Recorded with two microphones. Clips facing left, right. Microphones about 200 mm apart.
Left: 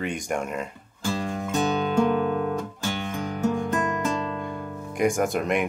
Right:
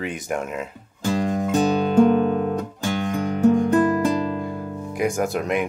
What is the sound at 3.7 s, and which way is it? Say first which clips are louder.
Music: right 8 dB; 35° right (ahead or behind).